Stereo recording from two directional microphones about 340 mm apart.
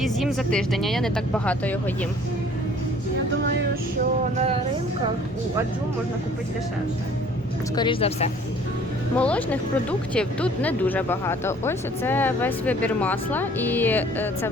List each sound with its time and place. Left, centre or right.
0.0 s speech: centre
7.8 s a woman's voice: centre
9.1 s speech: centre